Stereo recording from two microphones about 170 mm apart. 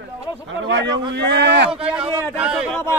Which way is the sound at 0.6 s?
90° right.